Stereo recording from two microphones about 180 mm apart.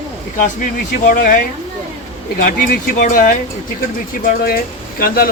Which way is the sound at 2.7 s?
45° left (ahead or behind).